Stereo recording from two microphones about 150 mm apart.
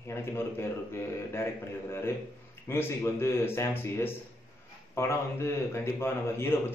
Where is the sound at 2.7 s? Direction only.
15° left (ahead or behind).